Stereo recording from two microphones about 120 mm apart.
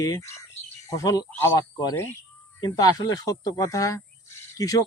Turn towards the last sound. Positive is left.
turn(degrees=30)  # may be behind; listen again after turning